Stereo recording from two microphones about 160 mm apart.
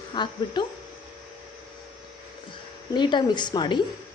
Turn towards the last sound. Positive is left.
turn(degrees=30)  # may be behind; listen again after turning